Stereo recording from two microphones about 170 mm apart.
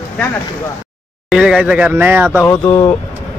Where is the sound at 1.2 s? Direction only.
5° right (ahead or behind).